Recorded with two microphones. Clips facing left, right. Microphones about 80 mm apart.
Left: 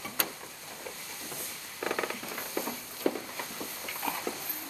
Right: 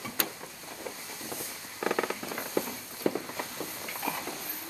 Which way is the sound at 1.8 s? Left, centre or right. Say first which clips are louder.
Right 3 dB; centre.